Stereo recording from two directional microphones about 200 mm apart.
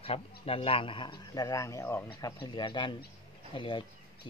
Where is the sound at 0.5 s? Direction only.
25° left (ahead or behind).